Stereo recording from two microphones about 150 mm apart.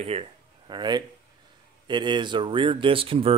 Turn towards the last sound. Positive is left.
turn(degrees=-35)  # may be behind; listen again after turning